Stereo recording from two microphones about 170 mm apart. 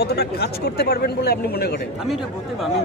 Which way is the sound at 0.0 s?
70° left (ahead or behind).